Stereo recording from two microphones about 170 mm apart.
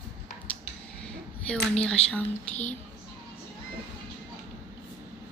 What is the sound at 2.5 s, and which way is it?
Speech, 40° left (ahead or behind).